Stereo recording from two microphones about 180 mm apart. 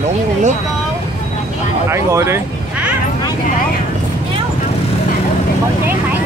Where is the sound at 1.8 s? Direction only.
15° right (ahead or behind).